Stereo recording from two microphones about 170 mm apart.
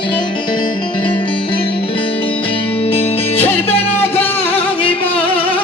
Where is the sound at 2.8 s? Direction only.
35° left (ahead or behind).